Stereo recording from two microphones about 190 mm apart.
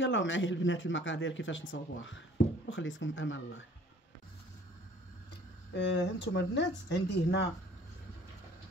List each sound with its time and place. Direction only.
0.0 s speech: 75° left (ahead or behind)
5.8 s speech: 65° left (ahead or behind)